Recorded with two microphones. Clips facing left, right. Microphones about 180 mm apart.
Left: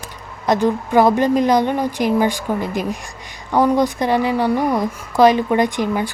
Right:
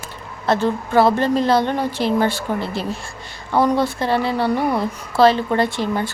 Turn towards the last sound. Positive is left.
turn(degrees=15)  # may be behind; listen again after turning